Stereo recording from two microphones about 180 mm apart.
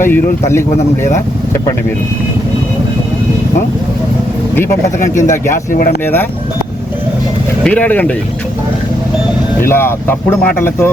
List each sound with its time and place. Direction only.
0.0 s speech: 15° left (ahead or behind)
5.5 s speech: 55° left (ahead or behind)
7.6 s speech: 10° left (ahead or behind)
9.6 s speech: 10° left (ahead or behind)